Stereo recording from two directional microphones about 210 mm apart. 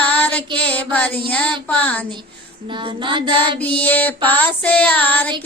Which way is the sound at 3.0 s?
25° right (ahead or behind).